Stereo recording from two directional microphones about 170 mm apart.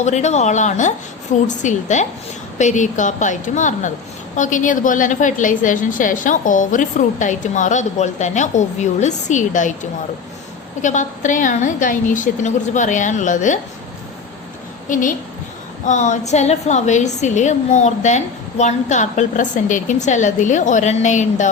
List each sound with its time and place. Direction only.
0.0 s a woman's voice: 40° left (ahead or behind)
10.8 s a woman's voice: 45° left (ahead or behind)
14.8 s a woman's voice: 50° left (ahead or behind)